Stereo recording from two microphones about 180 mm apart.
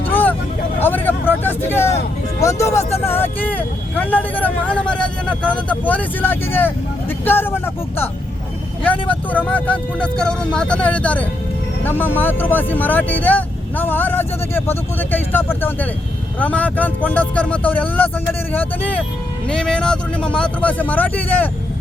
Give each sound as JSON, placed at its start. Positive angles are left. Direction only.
{"t": 0.1, "sound": "vehicle", "side_deg": 10}
{"t": 2.4, "sound": "speech", "side_deg": 15}